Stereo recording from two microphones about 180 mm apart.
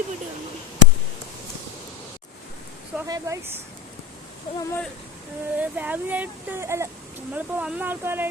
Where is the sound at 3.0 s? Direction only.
20° right (ahead or behind).